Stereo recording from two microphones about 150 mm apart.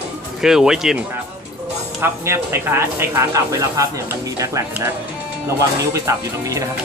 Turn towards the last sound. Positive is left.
turn(degrees=-20)  # may be behind; listen again after turning